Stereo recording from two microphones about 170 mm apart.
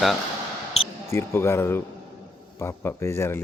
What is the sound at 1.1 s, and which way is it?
Speech, 15° left (ahead or behind).